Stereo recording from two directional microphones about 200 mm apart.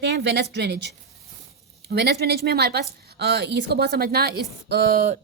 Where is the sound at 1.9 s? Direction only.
55° right (ahead or behind).